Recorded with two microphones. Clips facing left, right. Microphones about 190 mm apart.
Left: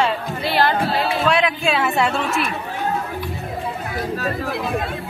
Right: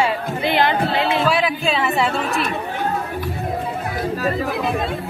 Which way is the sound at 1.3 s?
Centre (ahead or behind).